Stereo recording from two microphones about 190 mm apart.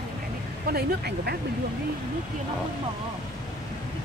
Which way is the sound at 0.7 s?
55° right (ahead or behind).